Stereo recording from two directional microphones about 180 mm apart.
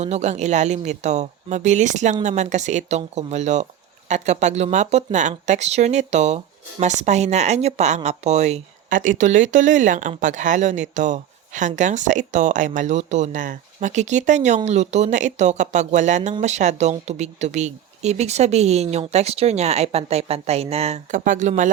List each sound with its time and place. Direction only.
0.0 s speech: 40° right (ahead or behind)